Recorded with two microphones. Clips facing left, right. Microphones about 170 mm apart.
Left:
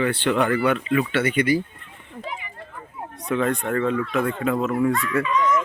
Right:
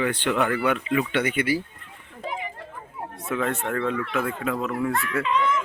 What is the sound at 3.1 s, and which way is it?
Speech, centre (ahead or behind).